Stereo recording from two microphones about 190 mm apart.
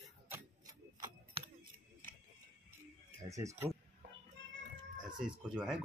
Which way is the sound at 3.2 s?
15° right (ahead or behind).